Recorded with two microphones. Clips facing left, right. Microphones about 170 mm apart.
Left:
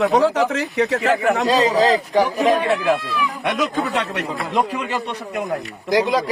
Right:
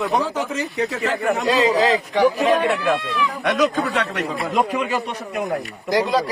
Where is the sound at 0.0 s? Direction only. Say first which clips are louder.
Left 6 dB; 85° left.